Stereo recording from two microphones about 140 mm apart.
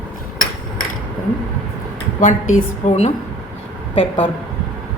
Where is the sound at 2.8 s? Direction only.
55° left (ahead or behind).